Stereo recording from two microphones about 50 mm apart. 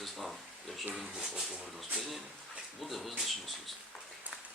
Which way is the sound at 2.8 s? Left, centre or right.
Centre.